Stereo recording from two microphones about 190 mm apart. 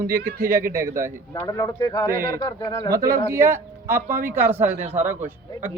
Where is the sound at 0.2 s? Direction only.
50° right (ahead or behind).